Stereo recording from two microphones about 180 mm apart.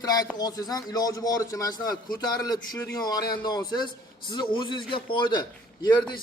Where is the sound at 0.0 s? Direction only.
20° left (ahead or behind).